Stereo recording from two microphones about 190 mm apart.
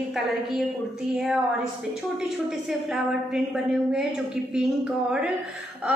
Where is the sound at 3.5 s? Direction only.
5° right (ahead or behind).